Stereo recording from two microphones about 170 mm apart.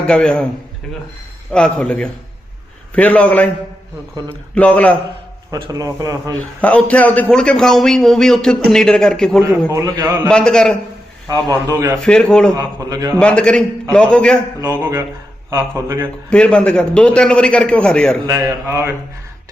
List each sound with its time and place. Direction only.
0.1 s a man's voice: 5° left (ahead or behind)
1.5 s a man's voice: 5° left (ahead or behind)
4.5 s a man's voice: 10° left (ahead or behind)
5.5 s a man's voice: 25° right (ahead or behind)
6.6 s a man's voice: 10° left (ahead or behind)
9.4 s a man's voice: 15° right (ahead or behind)
10.2 s a man's voice: 5° left (ahead or behind)
11.3 s a man's voice: 20° right (ahead or behind)
12.0 s a man's voice: 5° left (ahead or behind)
12.5 s a man's voice: 20° right (ahead or behind)
13.1 s a man's voice: 5° left (ahead or behind)
14.8 s a man's voice: 15° right (ahead or behind)
16.3 s a man's voice: 5° left (ahead or behind)
18.3 s a man's voice: 15° right (ahead or behind)